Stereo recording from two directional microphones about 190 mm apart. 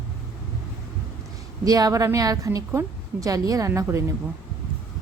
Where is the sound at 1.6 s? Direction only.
20° right (ahead or behind).